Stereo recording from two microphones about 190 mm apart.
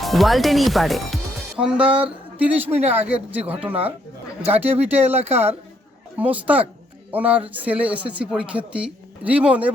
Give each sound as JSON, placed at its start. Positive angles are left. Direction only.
{"t": 0.0, "sound": "speech", "side_deg": 0}